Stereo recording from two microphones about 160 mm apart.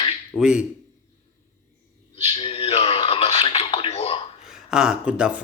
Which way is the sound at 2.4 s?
35° left (ahead or behind).